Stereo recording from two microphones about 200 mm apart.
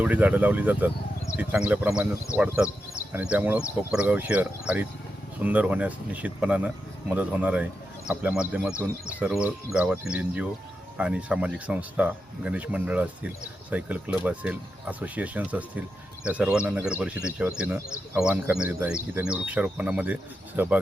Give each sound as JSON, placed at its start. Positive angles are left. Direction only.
{"t": 0.0, "sound": "speech", "side_deg": -10}